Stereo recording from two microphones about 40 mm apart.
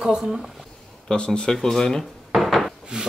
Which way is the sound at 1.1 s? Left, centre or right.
Left.